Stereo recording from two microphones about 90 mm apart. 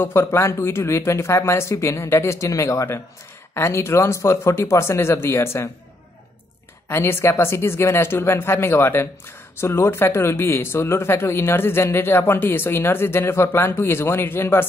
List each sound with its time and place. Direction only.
0.0 s speech: 25° left (ahead or behind)
6.9 s speech: 25° left (ahead or behind)